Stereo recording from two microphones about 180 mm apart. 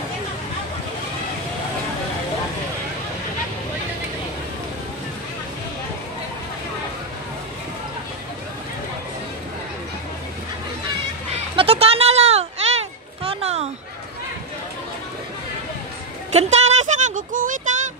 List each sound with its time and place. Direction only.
11.5 s children playing: 30° right (ahead or behind)
16.3 s music: 40° right (ahead or behind)